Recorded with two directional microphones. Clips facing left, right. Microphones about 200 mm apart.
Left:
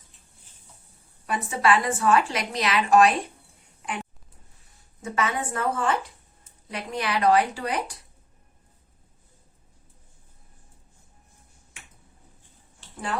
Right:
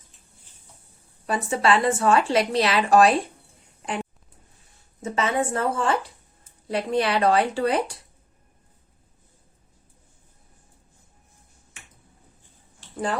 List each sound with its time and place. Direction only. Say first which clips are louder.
1.3 s a woman's voice: right 2 dB; 30° right (ahead or behind)
5.0 s a woman's voice: right 4 dB; 25° right (ahead or behind)